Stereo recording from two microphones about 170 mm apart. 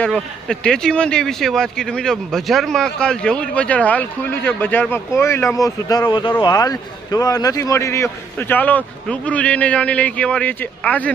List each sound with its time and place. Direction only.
0.0 s speech: 5° left (ahead or behind)